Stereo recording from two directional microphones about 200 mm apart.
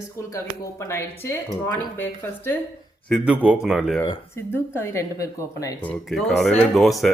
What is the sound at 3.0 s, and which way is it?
Speech, centre (ahead or behind).